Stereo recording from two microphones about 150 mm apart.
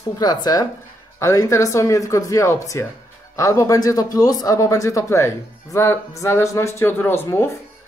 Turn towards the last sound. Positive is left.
turn(degrees=15)  # may be behind; listen again after turning